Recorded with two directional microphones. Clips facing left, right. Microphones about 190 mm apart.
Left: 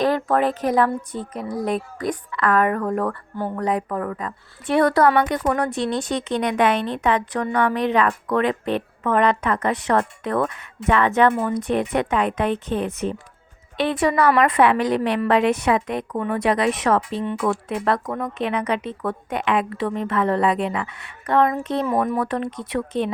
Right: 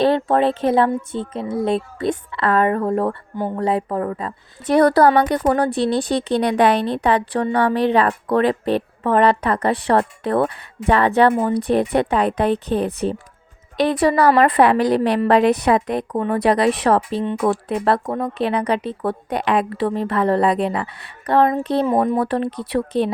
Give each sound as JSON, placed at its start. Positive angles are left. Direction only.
{"t": 0.0, "sound": "speech", "side_deg": -25}
{"t": 3.3, "sound": "speech", "side_deg": -15}
{"t": 3.6, "sound": "a woman's voice", "side_deg": -30}